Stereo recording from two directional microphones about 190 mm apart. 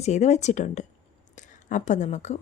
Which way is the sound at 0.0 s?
35° left (ahead or behind).